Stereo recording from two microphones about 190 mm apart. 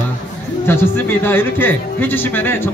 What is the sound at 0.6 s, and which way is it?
Speech, 10° left (ahead or behind).